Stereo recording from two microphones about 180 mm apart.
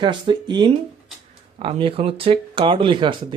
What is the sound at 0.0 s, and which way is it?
Speech, 25° right (ahead or behind).